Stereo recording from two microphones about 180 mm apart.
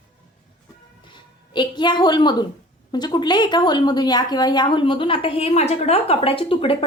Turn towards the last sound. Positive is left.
turn(degrees=30)  # may be behind; listen again after turning